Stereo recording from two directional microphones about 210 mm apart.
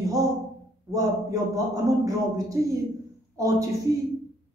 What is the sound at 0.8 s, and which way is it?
A woman's voice, 15° right (ahead or behind).